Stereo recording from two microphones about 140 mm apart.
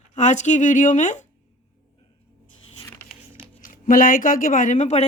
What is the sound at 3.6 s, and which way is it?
Speech, 75° left (ahead or behind).